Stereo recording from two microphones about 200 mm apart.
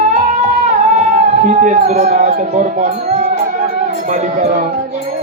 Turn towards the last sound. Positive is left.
turn(degrees=-40)  # may be behind; listen again after turning